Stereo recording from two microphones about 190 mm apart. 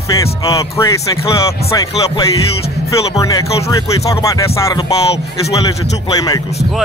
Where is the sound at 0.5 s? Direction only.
15° left (ahead or behind).